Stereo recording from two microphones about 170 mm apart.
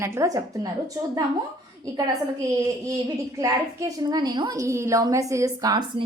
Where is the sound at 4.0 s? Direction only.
25° right (ahead or behind).